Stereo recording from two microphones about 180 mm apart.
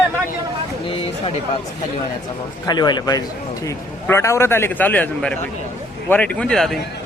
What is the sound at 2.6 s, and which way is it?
A man's voice, 25° left (ahead or behind).